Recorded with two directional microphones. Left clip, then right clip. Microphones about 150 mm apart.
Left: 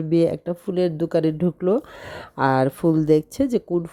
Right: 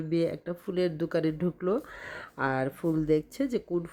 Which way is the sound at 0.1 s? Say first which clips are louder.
Left 10 dB; 40° left (ahead or behind).